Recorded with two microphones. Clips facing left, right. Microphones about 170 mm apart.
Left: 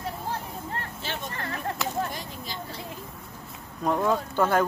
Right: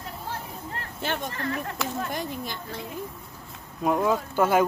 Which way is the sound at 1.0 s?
55° right (ahead or behind).